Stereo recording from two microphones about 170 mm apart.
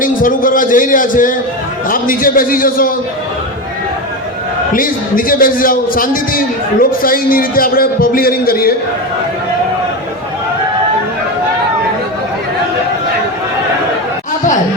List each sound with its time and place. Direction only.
0.0 s a man's voice: 55° left (ahead or behind)
4.7 s a man's voice: 55° left (ahead or behind)